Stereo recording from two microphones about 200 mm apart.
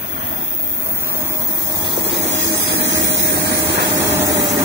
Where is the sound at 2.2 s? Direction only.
65° right (ahead or behind).